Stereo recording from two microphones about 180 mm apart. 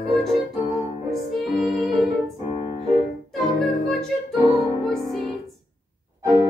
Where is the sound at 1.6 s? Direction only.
Centre (ahead or behind).